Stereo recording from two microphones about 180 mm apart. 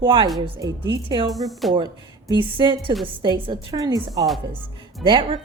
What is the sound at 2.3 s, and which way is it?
A woman's voice, 25° right (ahead or behind).